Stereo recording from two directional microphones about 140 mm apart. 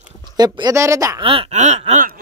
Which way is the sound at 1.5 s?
50° right (ahead or behind).